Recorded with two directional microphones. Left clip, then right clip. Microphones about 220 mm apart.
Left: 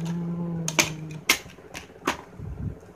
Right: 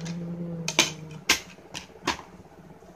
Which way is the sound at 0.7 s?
10° left (ahead or behind).